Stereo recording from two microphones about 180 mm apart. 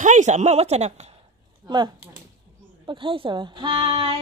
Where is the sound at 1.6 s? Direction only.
25° right (ahead or behind).